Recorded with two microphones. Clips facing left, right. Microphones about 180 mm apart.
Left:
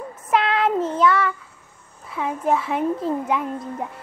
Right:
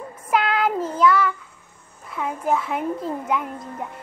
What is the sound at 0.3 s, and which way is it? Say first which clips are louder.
Child singing: left 1 dB; centre (ahead or behind).